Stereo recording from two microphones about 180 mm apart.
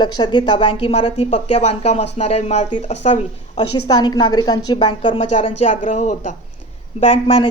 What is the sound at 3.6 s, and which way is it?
A woman's voice, 25° left (ahead or behind).